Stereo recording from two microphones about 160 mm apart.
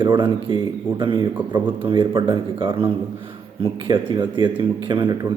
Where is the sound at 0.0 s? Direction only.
30° right (ahead or behind).